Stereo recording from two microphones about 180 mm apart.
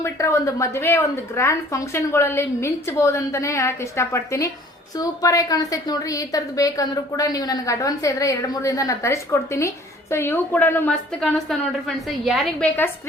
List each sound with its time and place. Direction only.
0.0 s a woman's voice: 15° left (ahead or behind); by 12.6 s centre (ahead or behind)